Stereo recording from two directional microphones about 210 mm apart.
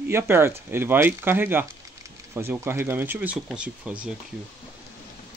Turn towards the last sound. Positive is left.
turn(degrees=-5)  # may be behind; listen again after turning